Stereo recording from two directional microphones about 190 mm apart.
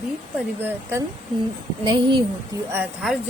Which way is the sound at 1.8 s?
25° right (ahead or behind).